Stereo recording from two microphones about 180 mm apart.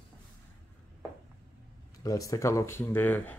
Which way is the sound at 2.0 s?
20° left (ahead or behind).